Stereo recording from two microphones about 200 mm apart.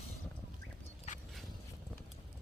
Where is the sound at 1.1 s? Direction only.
35° left (ahead or behind).